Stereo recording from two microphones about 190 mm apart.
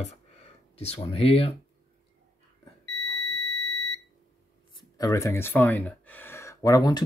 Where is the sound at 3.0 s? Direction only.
60° right (ahead or behind).